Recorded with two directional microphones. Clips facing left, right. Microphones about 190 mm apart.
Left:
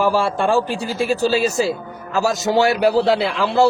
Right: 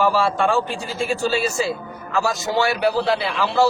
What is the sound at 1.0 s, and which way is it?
A man's voice, 40° left (ahead or behind).